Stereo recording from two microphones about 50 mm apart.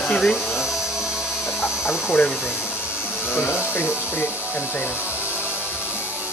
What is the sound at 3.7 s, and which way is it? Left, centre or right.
Speech, left.